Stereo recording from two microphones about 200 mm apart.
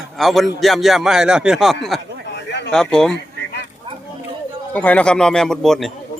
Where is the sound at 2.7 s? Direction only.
5° left (ahead or behind).